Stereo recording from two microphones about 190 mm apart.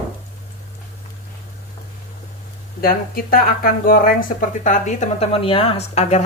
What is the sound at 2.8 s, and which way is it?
Speech, 50° left (ahead or behind).